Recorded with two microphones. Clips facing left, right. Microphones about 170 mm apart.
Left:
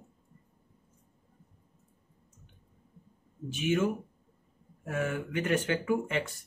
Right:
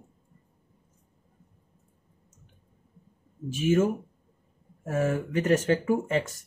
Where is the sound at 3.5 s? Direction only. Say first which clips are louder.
Right 5 dB; 45° right (ahead or behind).